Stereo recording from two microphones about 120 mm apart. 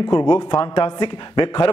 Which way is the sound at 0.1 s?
35° left (ahead or behind).